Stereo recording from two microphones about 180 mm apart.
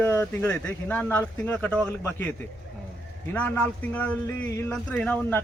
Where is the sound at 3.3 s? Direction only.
10° left (ahead or behind).